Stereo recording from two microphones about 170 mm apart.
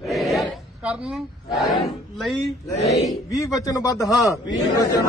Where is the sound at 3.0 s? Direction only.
20° left (ahead or behind).